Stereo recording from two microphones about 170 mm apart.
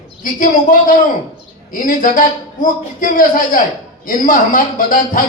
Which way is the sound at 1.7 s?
50° left (ahead or behind).